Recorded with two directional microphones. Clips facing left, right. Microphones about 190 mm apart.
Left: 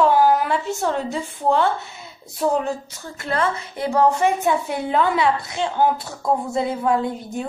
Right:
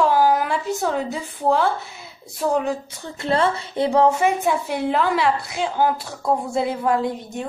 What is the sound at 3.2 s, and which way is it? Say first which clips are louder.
Speech: right 3 dB; 30° right (ahead or behind).